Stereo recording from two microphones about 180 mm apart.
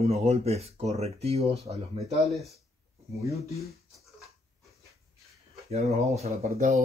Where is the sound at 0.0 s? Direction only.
35° right (ahead or behind).